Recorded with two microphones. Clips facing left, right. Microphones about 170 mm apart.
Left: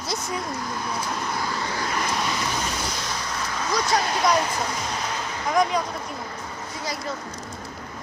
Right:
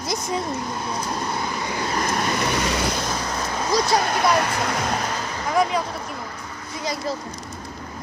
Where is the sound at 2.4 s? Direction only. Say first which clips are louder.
Right 5 dB; 70° right (ahead or behind).